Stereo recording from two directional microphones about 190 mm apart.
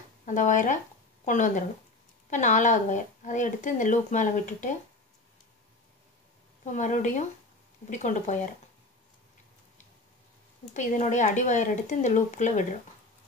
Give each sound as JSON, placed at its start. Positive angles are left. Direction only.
{"t": 0.2, "sound": "speech", "side_deg": 40}
{"t": 6.6, "sound": "speech", "side_deg": 40}
{"t": 10.7, "sound": "speech", "side_deg": 40}